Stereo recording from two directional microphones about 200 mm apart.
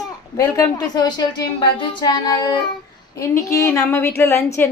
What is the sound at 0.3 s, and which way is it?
A woman's voice, 15° left (ahead or behind).